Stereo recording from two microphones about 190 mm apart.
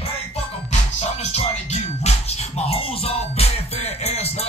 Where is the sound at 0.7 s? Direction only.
35° left (ahead or behind).